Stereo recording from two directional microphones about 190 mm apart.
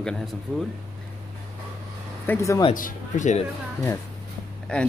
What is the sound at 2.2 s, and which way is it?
Speech, 15° left (ahead or behind).